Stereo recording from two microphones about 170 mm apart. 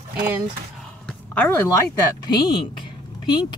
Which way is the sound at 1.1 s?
10° left (ahead or behind).